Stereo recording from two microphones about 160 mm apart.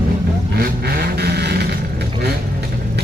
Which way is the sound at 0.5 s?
75° right (ahead or behind).